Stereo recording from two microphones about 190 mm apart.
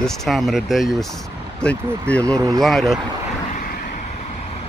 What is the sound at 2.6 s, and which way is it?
Speech, centre (ahead or behind).